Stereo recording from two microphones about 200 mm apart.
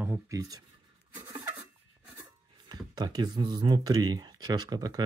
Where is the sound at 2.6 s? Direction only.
20° right (ahead or behind).